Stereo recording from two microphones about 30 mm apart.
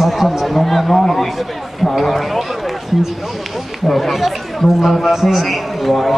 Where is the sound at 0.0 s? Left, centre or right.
Centre.